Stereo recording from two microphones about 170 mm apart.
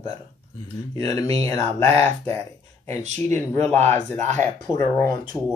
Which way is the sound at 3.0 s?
40° right (ahead or behind).